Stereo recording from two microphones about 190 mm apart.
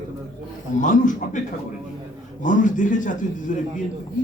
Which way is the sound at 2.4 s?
45° left (ahead or behind).